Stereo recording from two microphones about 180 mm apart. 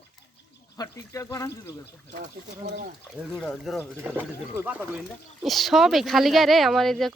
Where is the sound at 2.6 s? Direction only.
50° right (ahead or behind).